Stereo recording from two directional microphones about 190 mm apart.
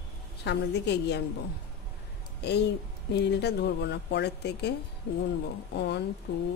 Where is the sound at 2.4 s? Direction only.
60° left (ahead or behind).